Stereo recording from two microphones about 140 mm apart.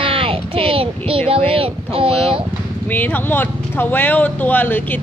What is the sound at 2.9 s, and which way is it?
Speech, 10° left (ahead or behind).